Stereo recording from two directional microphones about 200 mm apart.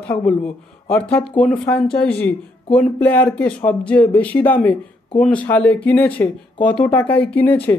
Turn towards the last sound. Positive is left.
turn(degrees=10)  # may be behind; listen again after turning